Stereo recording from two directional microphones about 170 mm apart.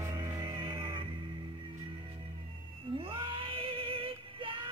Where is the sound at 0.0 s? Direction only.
20° right (ahead or behind).